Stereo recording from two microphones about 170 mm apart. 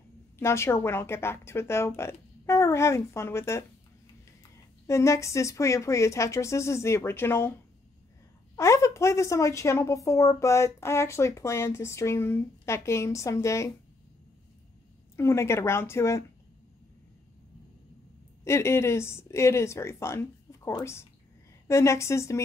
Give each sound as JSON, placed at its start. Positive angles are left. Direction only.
{"t": 0.4, "sound": "a woman's voice", "side_deg": 15}
{"t": 4.8, "sound": "a woman's voice", "side_deg": 15}
{"t": 8.5, "sound": "a woman's voice", "side_deg": 15}
{"t": 15.1, "sound": "a woman's voice", "side_deg": 15}
{"t": 18.4, "sound": "a woman's voice", "side_deg": 15}